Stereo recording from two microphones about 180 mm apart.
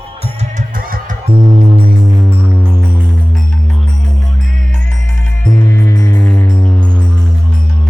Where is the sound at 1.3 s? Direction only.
30° right (ahead or behind).